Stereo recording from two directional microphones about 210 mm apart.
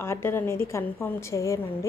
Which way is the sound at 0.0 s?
10° left (ahead or behind).